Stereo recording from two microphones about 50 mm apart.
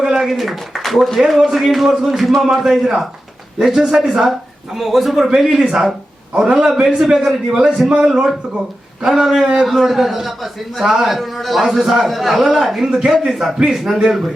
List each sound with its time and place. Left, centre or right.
0.0 s a man's voice: centre